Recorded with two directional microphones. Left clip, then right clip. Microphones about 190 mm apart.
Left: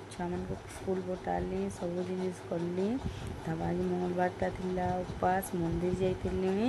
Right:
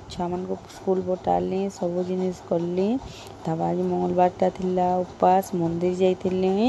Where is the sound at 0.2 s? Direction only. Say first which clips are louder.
Right 10 dB; 25° right (ahead or behind).